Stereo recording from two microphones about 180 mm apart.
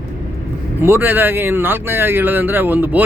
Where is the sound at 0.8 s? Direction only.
10° right (ahead or behind).